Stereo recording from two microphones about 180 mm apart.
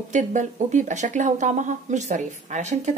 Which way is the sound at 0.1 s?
45° right (ahead or behind).